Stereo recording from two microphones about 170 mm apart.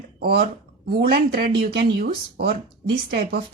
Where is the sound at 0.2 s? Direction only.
65° right (ahead or behind).